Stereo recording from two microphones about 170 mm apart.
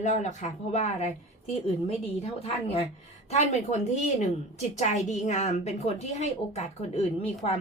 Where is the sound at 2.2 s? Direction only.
35° left (ahead or behind).